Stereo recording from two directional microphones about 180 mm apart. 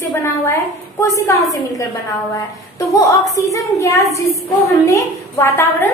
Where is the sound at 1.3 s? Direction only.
15° left (ahead or behind).